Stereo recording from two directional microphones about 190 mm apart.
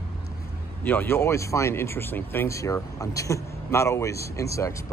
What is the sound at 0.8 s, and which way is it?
Speech, 10° left (ahead or behind).